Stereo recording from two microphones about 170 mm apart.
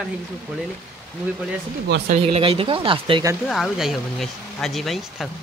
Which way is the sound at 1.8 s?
70° right (ahead or behind).